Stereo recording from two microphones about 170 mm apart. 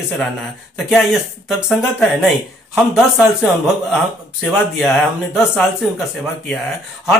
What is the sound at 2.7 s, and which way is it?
Speech, centre (ahead or behind).